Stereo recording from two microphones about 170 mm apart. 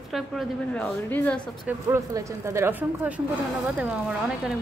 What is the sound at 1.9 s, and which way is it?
Speech, 15° right (ahead or behind).